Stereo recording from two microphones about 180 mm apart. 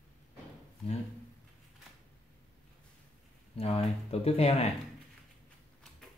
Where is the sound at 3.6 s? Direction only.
35° left (ahead or behind).